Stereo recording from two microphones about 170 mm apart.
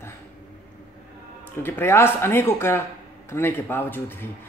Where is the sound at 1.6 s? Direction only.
15° left (ahead or behind).